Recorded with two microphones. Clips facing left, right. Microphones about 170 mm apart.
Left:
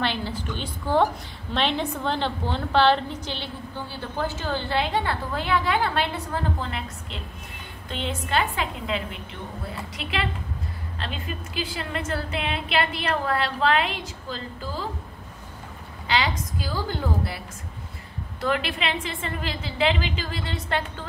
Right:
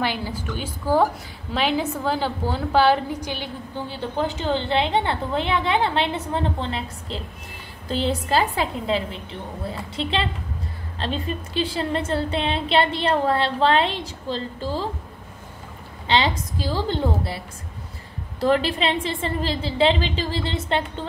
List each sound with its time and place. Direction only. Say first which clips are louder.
0.0 s a woman's voice: right 2 dB; 10° right (ahead or behind); by 14.9 s 30° right (ahead or behind)
16.1 s a woman's voice: right 4 dB; 25° right (ahead or behind)
18.4 s a woman's voice: right 6 dB; 35° right (ahead or behind)